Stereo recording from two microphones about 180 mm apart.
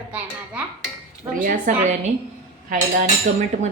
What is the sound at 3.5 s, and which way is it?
Speech, 40° right (ahead or behind).